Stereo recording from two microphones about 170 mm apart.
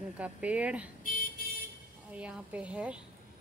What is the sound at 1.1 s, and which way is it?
Vehicle, 55° left (ahead or behind).